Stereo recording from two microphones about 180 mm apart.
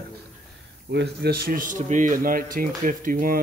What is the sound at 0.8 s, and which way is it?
Speech, 65° right (ahead or behind).